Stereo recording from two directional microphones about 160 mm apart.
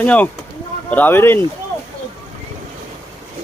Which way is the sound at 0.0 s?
10° left (ahead or behind).